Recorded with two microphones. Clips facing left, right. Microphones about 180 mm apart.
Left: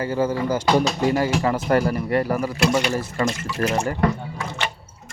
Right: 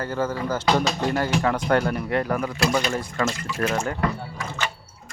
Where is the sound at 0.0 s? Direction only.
10° left (ahead or behind).